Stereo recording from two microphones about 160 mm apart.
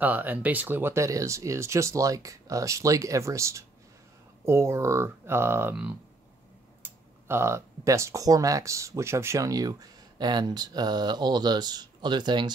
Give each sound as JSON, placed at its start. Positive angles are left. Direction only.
{"t": 0.0, "sound": "speech", "side_deg": -10}